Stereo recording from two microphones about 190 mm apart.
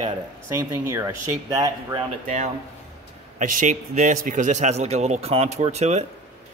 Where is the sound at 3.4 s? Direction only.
40° right (ahead or behind).